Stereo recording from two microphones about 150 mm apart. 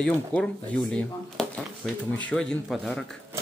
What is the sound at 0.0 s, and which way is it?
Speech, 5° left (ahead or behind).